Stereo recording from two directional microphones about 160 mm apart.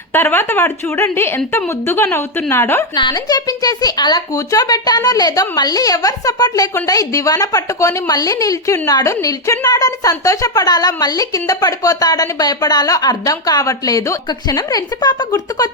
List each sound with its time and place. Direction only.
0.1 s speech: 15° left (ahead or behind)
2.9 s speech: 25° left (ahead or behind)